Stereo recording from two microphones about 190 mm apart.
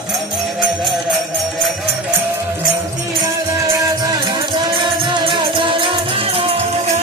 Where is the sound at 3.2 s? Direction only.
15° right (ahead or behind).